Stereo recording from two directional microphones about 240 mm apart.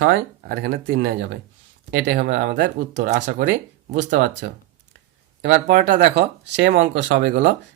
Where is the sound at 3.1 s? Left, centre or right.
Right.